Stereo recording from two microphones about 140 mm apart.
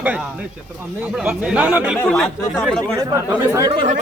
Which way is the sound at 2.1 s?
Centre (ahead or behind).